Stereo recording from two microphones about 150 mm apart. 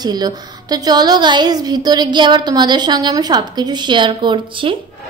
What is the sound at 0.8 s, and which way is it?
A woman's voice, 25° right (ahead or behind).